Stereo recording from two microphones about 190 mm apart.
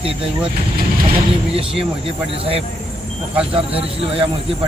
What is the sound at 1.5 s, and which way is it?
Speech, 30° right (ahead or behind).